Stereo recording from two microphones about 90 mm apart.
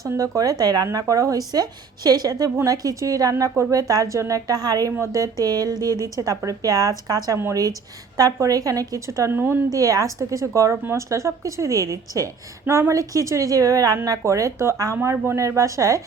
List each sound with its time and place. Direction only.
0.2 s a woman's voice: 40° right (ahead or behind)
4.9 s a woman's voice: 35° right (ahead or behind)
9.3 s speech: 20° right (ahead or behind)
9.7 s a woman's voice: 40° right (ahead or behind)